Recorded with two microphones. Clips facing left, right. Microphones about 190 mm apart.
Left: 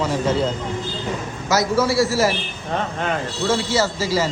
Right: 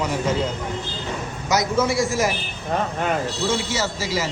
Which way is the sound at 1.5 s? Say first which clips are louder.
Left 2 dB; 20° right (ahead or behind).